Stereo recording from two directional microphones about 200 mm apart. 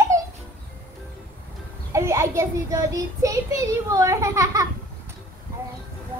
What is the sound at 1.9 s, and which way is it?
Child singing, 15° right (ahead or behind).